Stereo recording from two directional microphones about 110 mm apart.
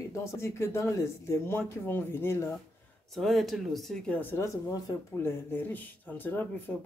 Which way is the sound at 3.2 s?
Centre (ahead or behind).